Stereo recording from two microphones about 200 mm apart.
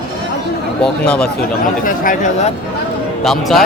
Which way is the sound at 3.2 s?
Centre (ahead or behind).